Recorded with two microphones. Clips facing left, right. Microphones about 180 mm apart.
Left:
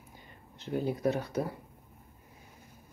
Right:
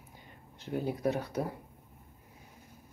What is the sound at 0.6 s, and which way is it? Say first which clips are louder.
Speech: left 2 dB; 10° right (ahead or behind).